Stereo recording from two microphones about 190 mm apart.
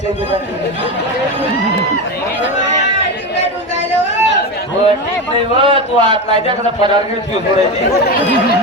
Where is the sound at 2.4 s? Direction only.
65° left (ahead or behind).